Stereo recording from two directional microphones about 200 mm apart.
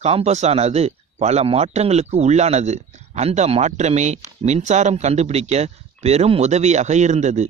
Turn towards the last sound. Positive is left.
turn(degrees=-35)  # may be behind; listen again after turning